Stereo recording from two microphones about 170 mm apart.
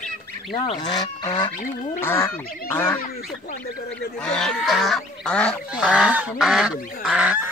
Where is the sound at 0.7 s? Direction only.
25° left (ahead or behind).